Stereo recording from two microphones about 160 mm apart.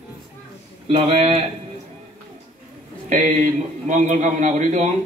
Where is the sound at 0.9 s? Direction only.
40° right (ahead or behind).